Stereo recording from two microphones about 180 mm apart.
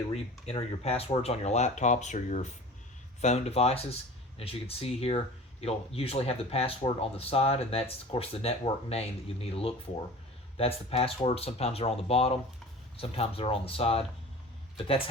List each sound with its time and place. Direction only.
0.1 s speech: 35° left (ahead or behind)